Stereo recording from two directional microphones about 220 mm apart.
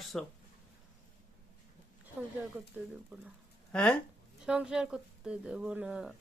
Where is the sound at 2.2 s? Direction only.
10° right (ahead or behind).